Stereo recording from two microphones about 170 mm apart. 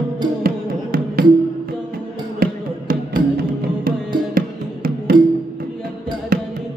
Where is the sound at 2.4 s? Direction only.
60° right (ahead or behind).